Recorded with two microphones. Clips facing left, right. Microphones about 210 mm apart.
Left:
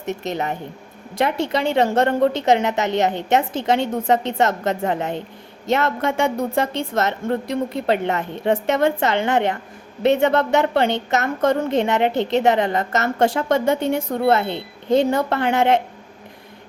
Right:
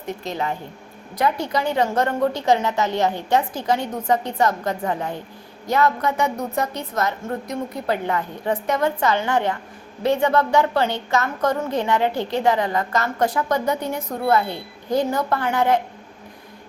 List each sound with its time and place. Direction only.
0.0 s a woman's voice: 20° left (ahead or behind)